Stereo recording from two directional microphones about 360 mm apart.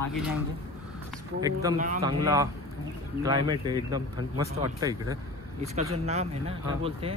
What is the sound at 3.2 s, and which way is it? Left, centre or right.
Speech, centre.